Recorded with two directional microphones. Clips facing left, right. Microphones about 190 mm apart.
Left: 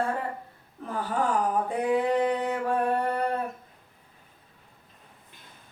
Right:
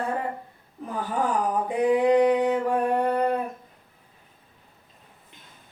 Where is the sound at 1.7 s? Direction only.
15° right (ahead or behind).